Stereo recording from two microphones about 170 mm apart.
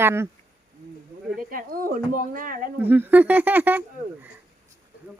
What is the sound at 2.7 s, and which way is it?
Speech, 10° right (ahead or behind).